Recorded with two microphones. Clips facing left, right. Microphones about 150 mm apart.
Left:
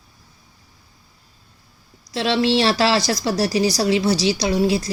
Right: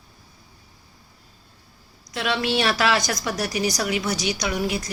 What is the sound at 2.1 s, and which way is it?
A woman's voice, 30° left (ahead or behind).